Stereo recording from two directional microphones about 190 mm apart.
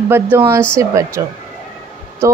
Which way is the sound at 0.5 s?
15° right (ahead or behind).